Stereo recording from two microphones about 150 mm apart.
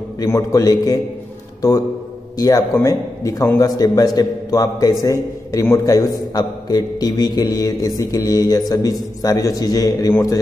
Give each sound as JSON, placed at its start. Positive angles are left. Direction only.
{"t": 0.2, "sound": "a man's voice", "side_deg": 20}
{"t": 2.3, "sound": "a man's voice", "side_deg": 25}